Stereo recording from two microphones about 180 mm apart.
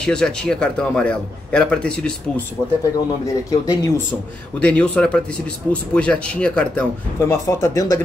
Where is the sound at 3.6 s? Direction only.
15° left (ahead or behind).